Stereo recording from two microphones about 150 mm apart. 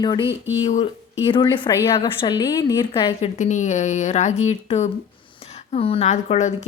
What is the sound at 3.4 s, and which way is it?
Speech, 55° left (ahead or behind).